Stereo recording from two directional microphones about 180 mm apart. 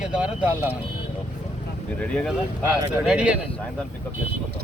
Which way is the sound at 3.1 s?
5° right (ahead or behind).